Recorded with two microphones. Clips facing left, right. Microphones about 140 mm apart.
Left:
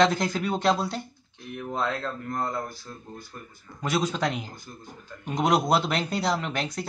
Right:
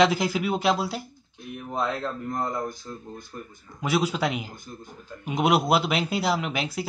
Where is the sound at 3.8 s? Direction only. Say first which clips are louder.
Right 2 dB; 5° right (ahead or behind).